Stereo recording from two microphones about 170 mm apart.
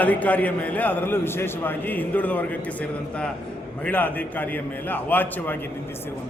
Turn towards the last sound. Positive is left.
turn(degrees=10)  # may be behind; listen again after turning